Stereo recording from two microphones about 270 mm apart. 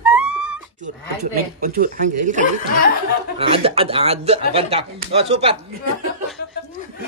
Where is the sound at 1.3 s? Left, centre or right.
Right.